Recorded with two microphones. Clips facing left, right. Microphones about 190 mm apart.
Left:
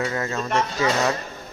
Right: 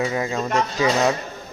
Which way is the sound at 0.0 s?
15° right (ahead or behind).